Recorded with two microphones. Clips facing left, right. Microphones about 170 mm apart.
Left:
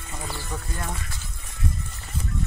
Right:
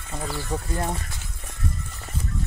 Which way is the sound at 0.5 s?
30° right (ahead or behind).